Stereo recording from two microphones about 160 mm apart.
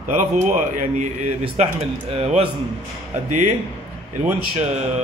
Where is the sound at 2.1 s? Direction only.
35° right (ahead or behind).